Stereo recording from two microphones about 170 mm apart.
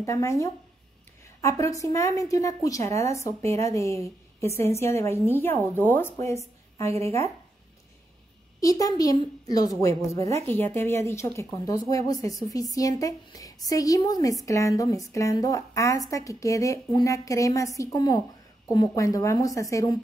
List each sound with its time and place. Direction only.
0.0 s a woman's voice: 15° left (ahead or behind)
8.5 s a woman's voice: 20° left (ahead or behind)